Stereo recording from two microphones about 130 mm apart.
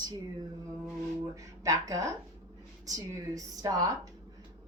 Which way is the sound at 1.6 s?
25° right (ahead or behind).